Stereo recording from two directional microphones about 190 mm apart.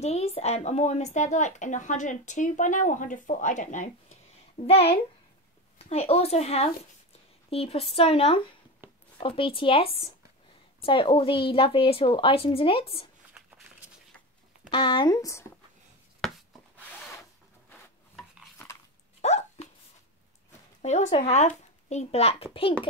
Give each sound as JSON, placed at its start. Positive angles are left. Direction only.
{"t": 0.0, "sound": "a woman's voice", "side_deg": 35}
{"t": 14.7, "sound": "a woman's voice", "side_deg": 25}
{"t": 17.6, "sound": "rub", "side_deg": 5}
{"t": 19.2, "sound": "hiccup", "side_deg": 35}
{"t": 20.8, "sound": "speech", "side_deg": 35}